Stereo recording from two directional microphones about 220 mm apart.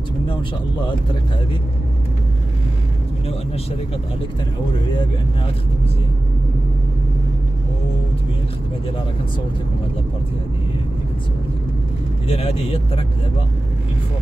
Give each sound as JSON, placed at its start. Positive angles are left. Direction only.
{"t": 12.3, "sound": "speech", "side_deg": 25}